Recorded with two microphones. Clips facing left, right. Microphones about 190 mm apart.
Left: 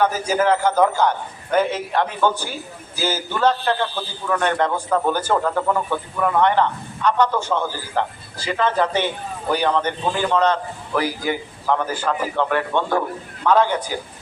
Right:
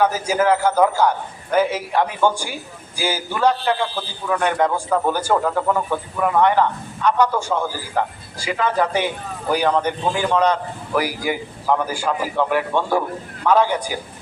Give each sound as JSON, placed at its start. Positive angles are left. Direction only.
{"t": 0.0, "sound": "a man's voice", "side_deg": -10}